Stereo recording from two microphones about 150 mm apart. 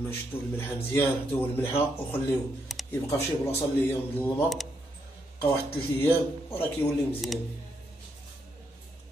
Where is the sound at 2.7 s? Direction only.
Centre (ahead or behind).